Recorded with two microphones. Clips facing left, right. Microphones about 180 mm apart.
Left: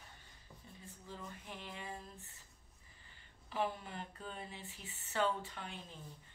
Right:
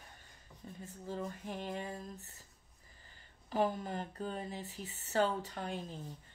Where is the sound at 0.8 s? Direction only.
45° right (ahead or behind).